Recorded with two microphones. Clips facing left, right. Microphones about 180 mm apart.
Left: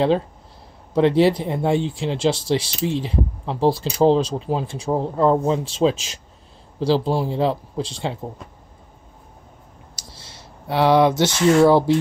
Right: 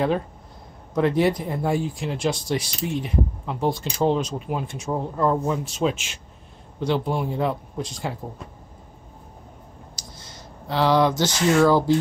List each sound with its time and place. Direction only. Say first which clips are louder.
0.9 s speech: left 4 dB; 25° left (ahead or behind)
10.7 s speech: left 3 dB; 25° left (ahead or behind)